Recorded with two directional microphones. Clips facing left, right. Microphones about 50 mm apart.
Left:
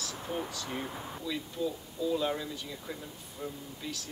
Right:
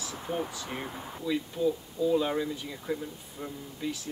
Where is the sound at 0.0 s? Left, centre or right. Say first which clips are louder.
Right 3 dB; centre.